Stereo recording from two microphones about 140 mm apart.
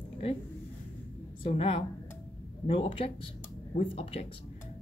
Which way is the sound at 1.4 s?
40° left (ahead or behind).